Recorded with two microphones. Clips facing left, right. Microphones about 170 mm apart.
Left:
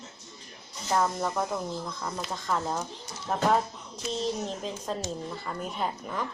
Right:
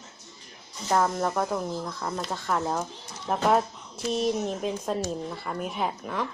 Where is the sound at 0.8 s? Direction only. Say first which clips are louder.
Right 3 dB; centre (ahead or behind).